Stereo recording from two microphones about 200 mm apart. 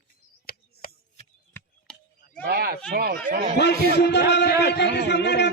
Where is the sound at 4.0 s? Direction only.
60° left (ahead or behind).